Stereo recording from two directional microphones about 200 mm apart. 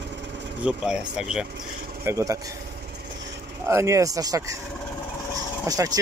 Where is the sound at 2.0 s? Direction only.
15° right (ahead or behind).